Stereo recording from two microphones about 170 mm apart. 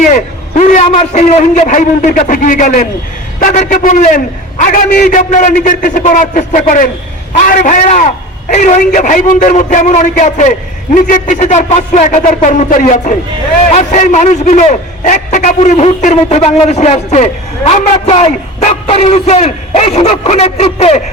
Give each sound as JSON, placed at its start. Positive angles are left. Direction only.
{"t": 0.1, "sound": "a man's voice", "side_deg": 45}